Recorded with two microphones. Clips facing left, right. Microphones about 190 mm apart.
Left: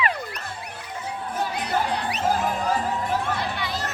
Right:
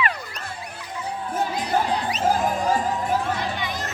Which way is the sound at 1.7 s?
65° left (ahead or behind).